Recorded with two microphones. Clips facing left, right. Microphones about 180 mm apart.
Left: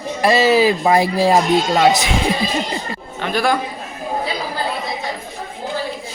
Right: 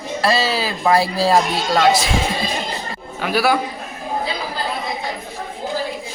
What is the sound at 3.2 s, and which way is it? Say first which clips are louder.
Speech: right 1 dB; 5° right (ahead or behind).